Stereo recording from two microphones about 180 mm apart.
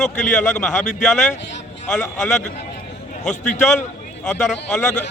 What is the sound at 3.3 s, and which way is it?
Speech, 40° left (ahead or behind).